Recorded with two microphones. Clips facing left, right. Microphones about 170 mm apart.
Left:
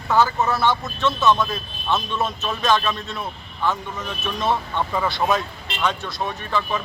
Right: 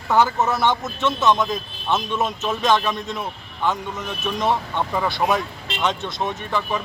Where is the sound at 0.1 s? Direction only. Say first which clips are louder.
Right 1 dB; 15° right (ahead or behind).